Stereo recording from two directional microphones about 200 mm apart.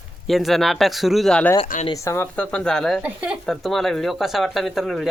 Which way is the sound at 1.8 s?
15° left (ahead or behind).